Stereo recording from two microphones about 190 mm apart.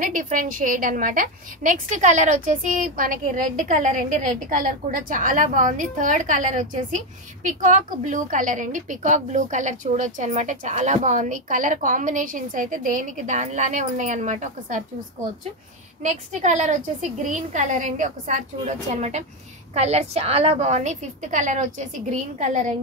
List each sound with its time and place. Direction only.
0.0 s a woman's voice: 45° right (ahead or behind)
16.0 s a woman's voice: 40° right (ahead or behind)